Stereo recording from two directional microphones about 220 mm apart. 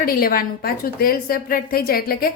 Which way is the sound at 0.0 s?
40° left (ahead or behind).